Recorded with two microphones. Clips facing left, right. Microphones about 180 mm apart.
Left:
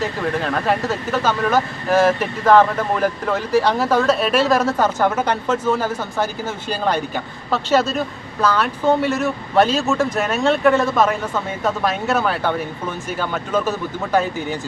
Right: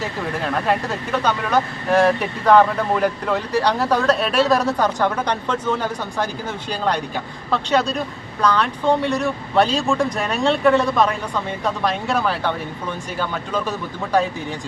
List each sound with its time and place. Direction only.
0.0 s speech: centre (ahead or behind)